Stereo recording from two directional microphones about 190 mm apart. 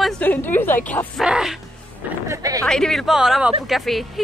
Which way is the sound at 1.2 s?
5° right (ahead or behind).